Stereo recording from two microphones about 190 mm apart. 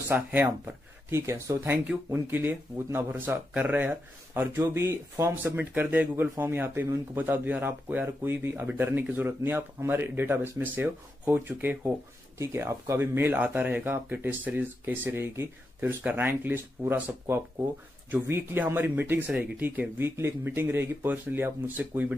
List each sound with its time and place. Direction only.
0.1 s speech: 10° right (ahead or behind)